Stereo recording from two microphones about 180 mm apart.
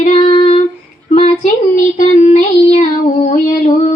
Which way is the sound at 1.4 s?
50° left (ahead or behind).